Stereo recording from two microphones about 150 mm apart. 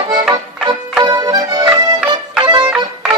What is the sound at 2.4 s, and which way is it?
Music, 30° right (ahead or behind).